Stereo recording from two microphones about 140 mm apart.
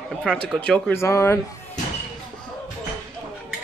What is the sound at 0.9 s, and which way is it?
Speech, 20° left (ahead or behind).